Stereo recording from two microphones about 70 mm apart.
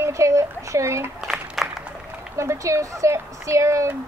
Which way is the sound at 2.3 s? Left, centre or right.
Right.